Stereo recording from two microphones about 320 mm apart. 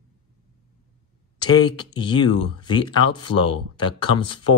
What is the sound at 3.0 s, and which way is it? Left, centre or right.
Speech, left.